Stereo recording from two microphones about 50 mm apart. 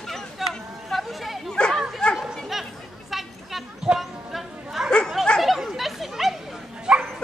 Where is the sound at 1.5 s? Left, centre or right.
Centre.